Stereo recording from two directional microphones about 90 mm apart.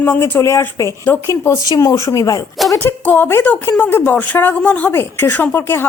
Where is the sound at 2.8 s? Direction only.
20° left (ahead or behind).